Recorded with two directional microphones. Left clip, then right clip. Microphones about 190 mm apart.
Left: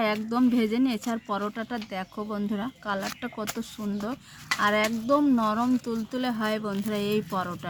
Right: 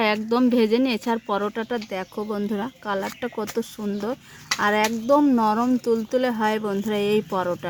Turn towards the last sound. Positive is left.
turn(degrees=-55)  # may be behind; listen again after turning